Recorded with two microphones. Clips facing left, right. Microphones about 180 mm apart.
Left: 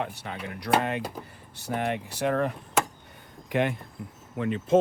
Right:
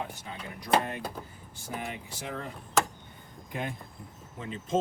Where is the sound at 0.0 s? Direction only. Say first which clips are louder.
Left 5 dB; 70° left (ahead or behind).